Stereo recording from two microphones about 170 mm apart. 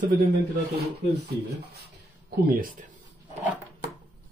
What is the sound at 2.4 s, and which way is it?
Speech, 55° right (ahead or behind).